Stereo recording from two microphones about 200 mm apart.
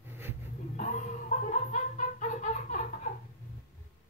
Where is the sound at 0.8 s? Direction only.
40° left (ahead or behind).